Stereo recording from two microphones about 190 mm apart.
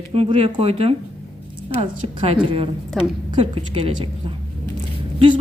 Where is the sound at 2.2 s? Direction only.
30° right (ahead or behind).